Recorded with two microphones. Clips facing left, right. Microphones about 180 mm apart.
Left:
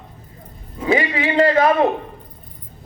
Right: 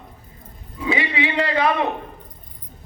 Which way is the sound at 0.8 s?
45° left (ahead or behind).